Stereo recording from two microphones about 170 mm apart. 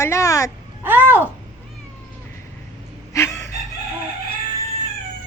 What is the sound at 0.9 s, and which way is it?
Speech, 10° right (ahead or behind).